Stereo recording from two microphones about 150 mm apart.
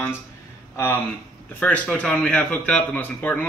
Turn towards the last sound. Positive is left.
turn(degrees=10)  # may be behind; listen again after turning